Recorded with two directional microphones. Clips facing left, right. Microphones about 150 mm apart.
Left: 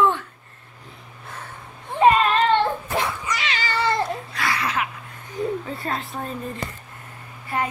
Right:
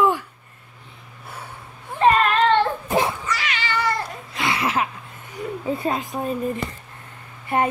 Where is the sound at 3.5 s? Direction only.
35° left (ahead or behind).